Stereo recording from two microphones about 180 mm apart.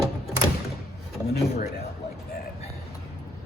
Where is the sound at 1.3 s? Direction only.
60° left (ahead or behind).